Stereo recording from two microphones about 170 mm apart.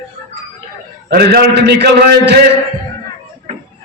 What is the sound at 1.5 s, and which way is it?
Speech, 80° right.